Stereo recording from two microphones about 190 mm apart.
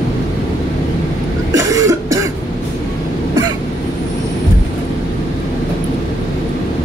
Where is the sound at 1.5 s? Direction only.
15° right (ahead or behind).